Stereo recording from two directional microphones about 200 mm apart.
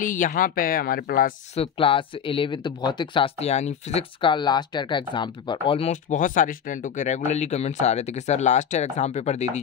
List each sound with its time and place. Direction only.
0.0 s speech: 40° left (ahead or behind)
1.6 s speech: 25° left (ahead or behind)